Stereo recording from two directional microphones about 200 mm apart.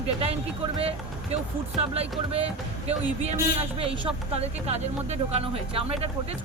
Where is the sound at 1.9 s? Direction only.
30° right (ahead or behind).